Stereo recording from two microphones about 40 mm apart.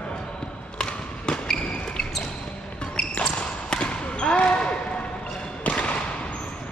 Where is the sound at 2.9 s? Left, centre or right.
Left.